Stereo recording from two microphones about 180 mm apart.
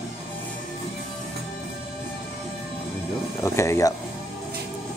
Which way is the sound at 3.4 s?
15° left (ahead or behind).